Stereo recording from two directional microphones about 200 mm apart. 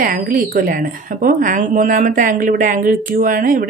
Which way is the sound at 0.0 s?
45° right (ahead or behind).